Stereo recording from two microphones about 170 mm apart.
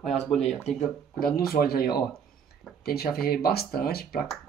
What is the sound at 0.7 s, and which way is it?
Speech, 45° left (ahead or behind).